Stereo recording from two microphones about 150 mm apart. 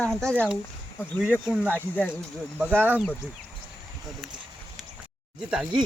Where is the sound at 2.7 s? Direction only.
10° right (ahead or behind).